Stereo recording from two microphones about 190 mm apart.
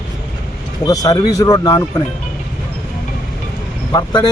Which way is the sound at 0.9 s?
20° left (ahead or behind).